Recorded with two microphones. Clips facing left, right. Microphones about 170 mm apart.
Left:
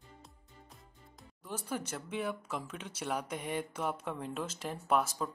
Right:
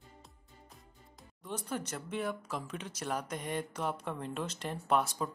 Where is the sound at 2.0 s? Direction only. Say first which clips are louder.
Even; 10° left (ahead or behind).